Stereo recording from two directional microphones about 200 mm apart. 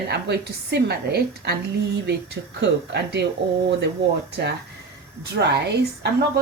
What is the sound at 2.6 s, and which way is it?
Speech, 60° right (ahead or behind).